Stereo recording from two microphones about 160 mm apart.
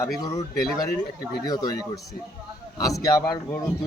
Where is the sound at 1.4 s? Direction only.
25° left (ahead or behind).